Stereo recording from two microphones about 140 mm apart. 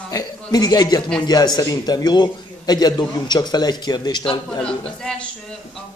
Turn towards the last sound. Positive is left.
turn(degrees=5)  # may be behind; listen again after turning